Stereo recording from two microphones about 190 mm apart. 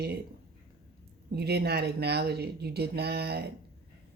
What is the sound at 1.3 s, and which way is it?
Speech, 55° right (ahead or behind).